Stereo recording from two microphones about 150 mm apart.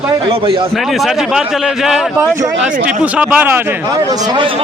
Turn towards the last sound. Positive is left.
turn(degrees=-10)  # may be behind; listen again after turning